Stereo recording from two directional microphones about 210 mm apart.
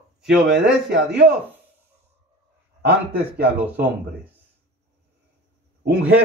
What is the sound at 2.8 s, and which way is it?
Speech, 50° right (ahead or behind).